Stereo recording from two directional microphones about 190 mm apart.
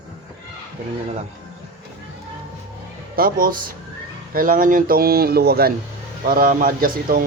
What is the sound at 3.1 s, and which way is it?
A man's voice, 50° right (ahead or behind).